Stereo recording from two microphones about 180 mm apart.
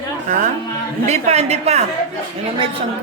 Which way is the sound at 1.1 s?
35° right (ahead or behind).